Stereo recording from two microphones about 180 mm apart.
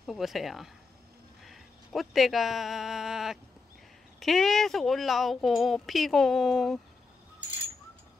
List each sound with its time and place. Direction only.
0.0 s speech: centre (ahead or behind)